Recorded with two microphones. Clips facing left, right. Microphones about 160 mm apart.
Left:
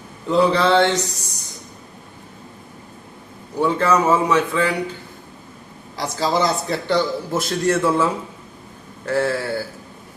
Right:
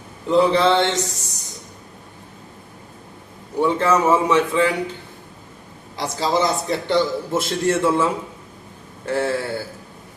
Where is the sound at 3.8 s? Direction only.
25° right (ahead or behind).